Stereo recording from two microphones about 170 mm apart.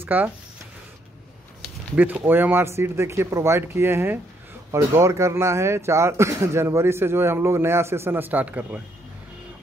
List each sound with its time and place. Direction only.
0.0 s speech: 10° right (ahead or behind)
2.0 s speech: 10° right (ahead or behind)